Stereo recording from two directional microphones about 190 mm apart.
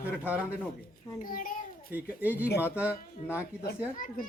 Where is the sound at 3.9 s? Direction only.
45° left (ahead or behind).